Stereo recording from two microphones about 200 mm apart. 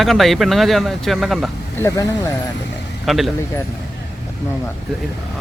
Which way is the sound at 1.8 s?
15° left (ahead or behind).